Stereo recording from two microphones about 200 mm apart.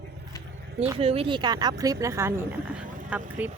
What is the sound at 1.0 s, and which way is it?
Speech, 30° right (ahead or behind).